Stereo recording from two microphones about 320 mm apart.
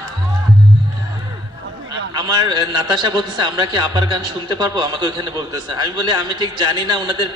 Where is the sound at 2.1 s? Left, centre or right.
Centre.